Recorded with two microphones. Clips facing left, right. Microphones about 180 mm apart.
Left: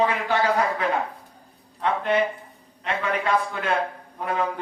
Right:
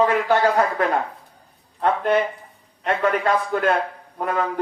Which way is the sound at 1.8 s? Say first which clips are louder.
Right 3 dB; 50° right (ahead or behind).